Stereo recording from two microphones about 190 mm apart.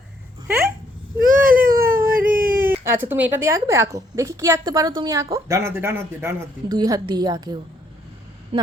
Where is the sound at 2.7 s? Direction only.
10° right (ahead or behind).